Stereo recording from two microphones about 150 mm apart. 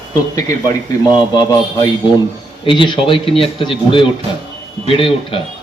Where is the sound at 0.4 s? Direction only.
20° left (ahead or behind).